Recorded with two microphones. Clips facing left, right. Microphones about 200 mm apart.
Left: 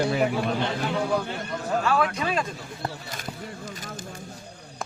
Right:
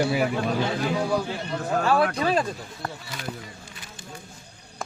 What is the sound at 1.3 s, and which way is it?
Speech, 50° left (ahead or behind).